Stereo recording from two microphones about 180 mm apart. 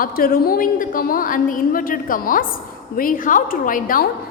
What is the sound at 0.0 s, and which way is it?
A woman's voice, 55° left (ahead or behind).